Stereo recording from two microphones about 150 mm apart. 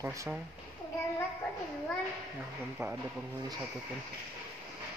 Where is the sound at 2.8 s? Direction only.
20° right (ahead or behind).